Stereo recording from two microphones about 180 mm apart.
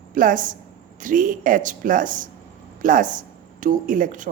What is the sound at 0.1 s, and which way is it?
A woman's voice, 50° right (ahead or behind).